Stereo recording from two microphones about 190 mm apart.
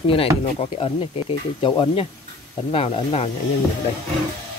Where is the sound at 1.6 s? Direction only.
25° left (ahead or behind).